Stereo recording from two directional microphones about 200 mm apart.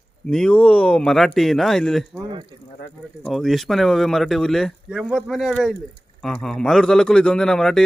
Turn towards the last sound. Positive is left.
turn(degrees=0)  # may be behind; listen again after turning